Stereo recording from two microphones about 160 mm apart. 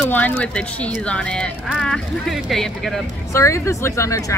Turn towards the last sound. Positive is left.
turn(degrees=20)  # may be behind; listen again after turning